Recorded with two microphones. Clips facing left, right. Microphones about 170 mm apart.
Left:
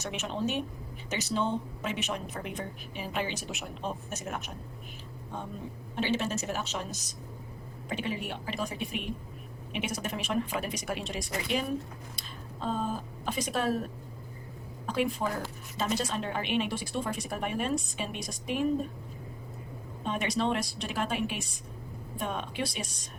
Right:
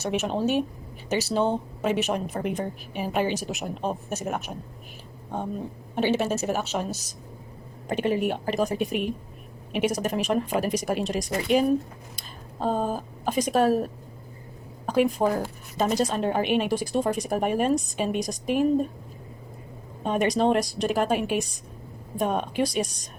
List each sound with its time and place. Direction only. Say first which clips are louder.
0.1 s a woman's voice: right 8 dB; 45° right (ahead or behind)
5.9 s a woman's voice: right 6 dB; 55° right (ahead or behind)
7.9 s a woman's voice: right 10 dB; 50° right (ahead or behind)
20.1 s a woman's voice: right 8 dB; 45° right (ahead or behind)